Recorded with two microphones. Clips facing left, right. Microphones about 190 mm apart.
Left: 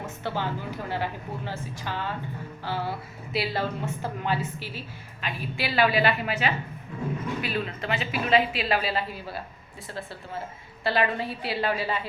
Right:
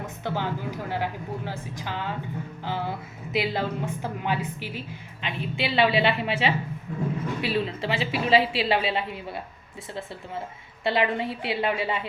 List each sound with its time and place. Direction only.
0.0 s speech: 15° right (ahead or behind)
10.8 s speech: 20° right (ahead or behind)